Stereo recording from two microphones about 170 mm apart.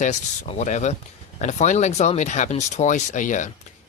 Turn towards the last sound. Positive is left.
turn(degrees=50)  # may be behind; listen again after turning